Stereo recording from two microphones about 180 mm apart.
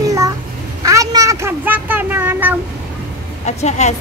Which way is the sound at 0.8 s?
20° right (ahead or behind).